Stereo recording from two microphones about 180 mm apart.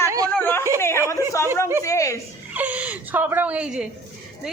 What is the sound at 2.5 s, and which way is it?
A woman's voice, 10° right (ahead or behind).